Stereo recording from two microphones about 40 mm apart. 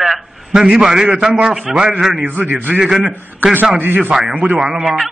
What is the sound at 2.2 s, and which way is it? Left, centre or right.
Speech, right.